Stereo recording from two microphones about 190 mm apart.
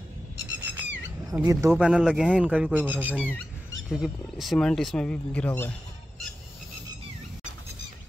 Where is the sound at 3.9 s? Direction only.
Centre (ahead or behind).